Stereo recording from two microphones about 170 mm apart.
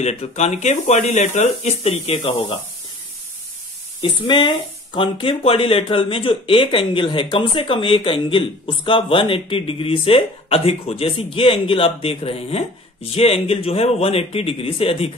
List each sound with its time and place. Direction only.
0.0 s speech: 40° left (ahead or behind)
4.0 s speech: 30° left (ahead or behind)